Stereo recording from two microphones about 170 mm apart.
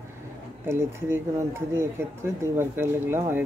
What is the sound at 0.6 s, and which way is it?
Speech, 15° right (ahead or behind).